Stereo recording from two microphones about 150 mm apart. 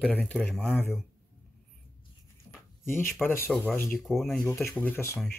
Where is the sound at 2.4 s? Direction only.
15° left (ahead or behind).